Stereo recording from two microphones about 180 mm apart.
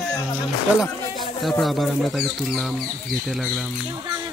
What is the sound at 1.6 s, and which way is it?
Speech, centre (ahead or behind).